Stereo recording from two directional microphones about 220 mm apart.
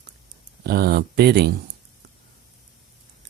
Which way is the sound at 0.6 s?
45° right (ahead or behind).